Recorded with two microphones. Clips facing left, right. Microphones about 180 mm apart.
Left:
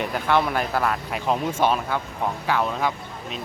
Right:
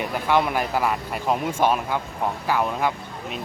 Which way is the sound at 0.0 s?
10° right (ahead or behind).